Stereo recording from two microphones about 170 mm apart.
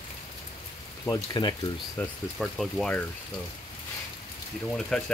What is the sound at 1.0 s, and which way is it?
Speech, 25° left (ahead or behind).